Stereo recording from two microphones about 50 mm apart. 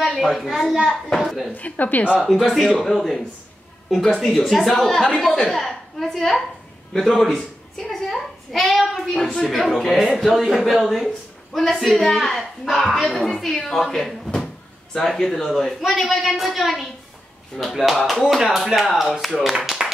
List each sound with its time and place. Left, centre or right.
0.1 s speech: centre
1.5 s a woman's voice: left
2.2 s a woman's voice: centre